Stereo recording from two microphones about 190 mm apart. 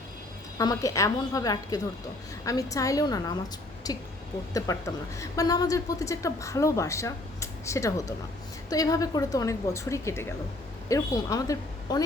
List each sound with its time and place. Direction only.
0.6 s a woman's voice: 20° left (ahead or behind)